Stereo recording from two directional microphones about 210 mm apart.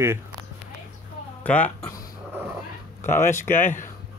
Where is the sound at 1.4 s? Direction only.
5° left (ahead or behind).